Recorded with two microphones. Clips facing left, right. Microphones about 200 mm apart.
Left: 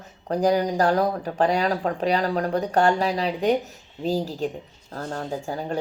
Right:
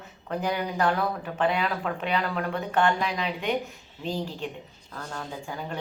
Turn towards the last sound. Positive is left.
turn(degrees=40)  # may be behind; listen again after turning